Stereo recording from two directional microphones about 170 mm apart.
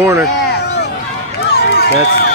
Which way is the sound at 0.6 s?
75° left (ahead or behind).